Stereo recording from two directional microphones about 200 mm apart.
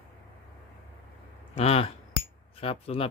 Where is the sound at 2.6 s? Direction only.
30° left (ahead or behind).